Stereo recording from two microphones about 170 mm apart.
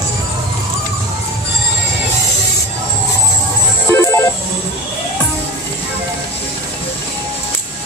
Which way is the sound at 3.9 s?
15° left (ahead or behind).